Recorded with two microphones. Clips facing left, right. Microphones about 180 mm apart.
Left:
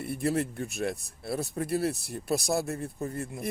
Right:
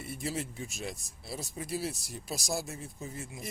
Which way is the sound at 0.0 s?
60° left (ahead or behind).